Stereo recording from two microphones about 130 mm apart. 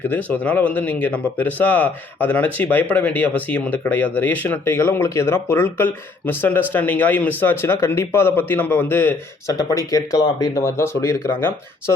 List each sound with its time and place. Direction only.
0.1 s speech: 15° left (ahead or behind)